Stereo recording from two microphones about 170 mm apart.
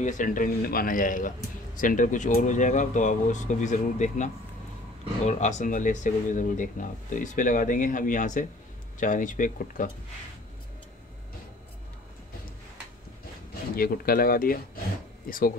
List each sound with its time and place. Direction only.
0.0 s speech: 50° left (ahead or behind)
13.7 s speech: 60° left (ahead or behind)